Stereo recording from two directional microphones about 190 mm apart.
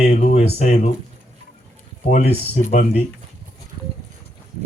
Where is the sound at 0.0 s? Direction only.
55° left (ahead or behind).